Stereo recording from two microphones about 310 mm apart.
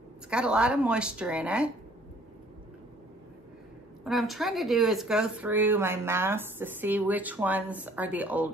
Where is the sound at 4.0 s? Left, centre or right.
Centre.